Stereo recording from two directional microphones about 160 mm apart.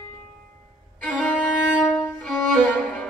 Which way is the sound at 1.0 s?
10° left (ahead or behind).